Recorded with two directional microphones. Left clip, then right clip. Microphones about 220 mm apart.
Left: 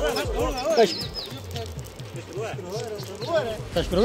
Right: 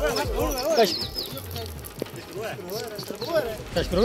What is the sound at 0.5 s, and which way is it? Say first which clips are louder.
Speech: even; centre (ahead or behind).